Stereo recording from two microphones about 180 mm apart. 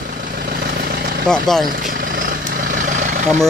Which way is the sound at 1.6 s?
50° right (ahead or behind).